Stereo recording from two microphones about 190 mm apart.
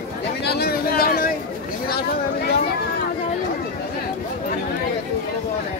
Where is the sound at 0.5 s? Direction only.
55° left (ahead or behind).